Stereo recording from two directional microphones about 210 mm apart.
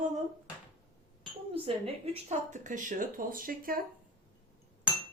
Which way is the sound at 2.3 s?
35° right (ahead or behind).